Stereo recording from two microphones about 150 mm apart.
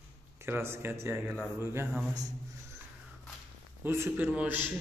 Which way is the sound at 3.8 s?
15° right (ahead or behind).